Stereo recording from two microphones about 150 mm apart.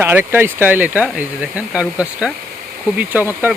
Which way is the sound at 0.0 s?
15° right (ahead or behind).